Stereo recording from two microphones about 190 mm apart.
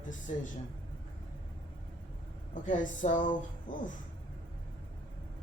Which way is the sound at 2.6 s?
40° left (ahead or behind).